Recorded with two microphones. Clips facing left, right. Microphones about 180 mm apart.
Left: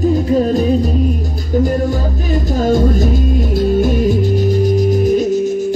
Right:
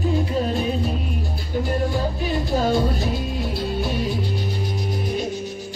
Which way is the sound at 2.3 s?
45° left (ahead or behind).